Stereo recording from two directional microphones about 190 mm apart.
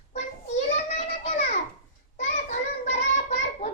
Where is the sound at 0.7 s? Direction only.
40° left (ahead or behind).